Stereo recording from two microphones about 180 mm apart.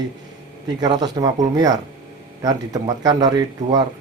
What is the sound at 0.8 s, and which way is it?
Speech, 25° right (ahead or behind).